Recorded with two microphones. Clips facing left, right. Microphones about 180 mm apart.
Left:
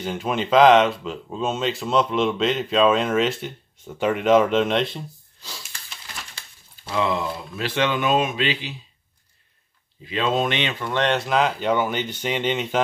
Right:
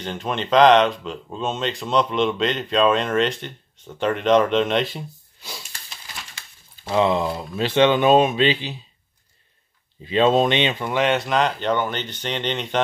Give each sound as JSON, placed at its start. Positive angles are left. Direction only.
{"t": 0.0, "sound": "speech", "side_deg": 5}
{"t": 6.8, "sound": "speech", "side_deg": -30}
{"t": 10.0, "sound": "speech", "side_deg": -30}
{"t": 10.9, "sound": "speech", "side_deg": -5}